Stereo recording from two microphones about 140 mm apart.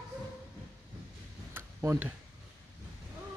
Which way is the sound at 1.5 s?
15° right (ahead or behind).